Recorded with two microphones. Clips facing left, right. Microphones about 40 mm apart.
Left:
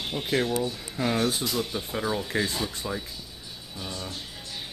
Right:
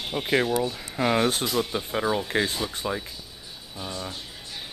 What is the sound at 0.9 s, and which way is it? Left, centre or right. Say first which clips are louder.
Speech: right 4 dB; right.